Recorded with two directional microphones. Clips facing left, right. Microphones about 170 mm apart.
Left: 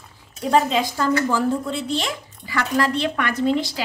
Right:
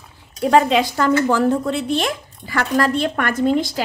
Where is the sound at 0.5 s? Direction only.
75° right (ahead or behind).